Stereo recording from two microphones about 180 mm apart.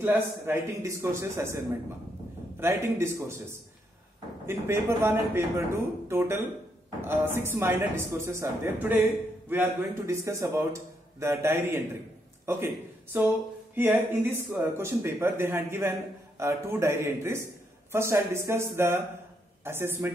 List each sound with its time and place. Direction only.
0.0 s a man's voice: 10° right (ahead or behind)
2.6 s a man's voice: 15° right (ahead or behind)
4.5 s a man's voice: 15° right (ahead or behind)